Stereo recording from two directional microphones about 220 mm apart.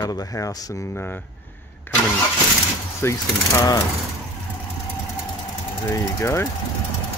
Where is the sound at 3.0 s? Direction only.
10° left (ahead or behind).